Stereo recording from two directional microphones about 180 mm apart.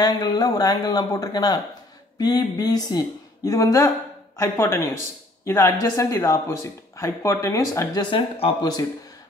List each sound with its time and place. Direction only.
0.0 s speech: 20° left (ahead or behind)